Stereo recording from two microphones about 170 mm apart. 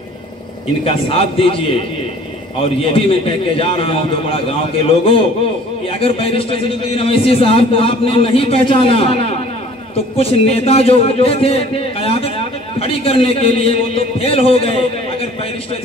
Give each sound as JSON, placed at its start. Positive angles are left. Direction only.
{"t": 0.8, "sound": "a man's voice", "side_deg": 35}